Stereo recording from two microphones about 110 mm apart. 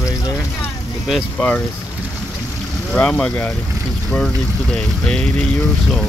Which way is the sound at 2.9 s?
10° left (ahead or behind).